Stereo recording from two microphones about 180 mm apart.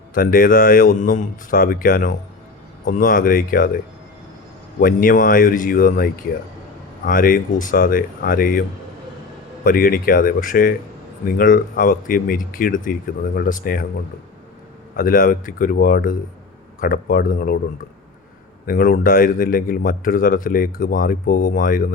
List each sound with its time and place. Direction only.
0.1 s a man's voice: 50° left (ahead or behind)
4.8 s a man's voice: 50° left (ahead or behind)
9.6 s a man's voice: 50° left (ahead or behind)
14.9 s a man's voice: 50° left (ahead or behind)
18.6 s a man's voice: 50° left (ahead or behind)